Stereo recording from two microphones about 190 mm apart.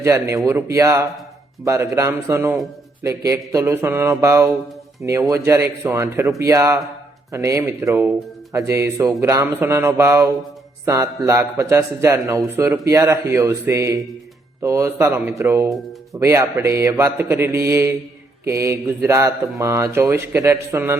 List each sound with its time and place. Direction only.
0.0 s a man's voice: 15° right (ahead or behind)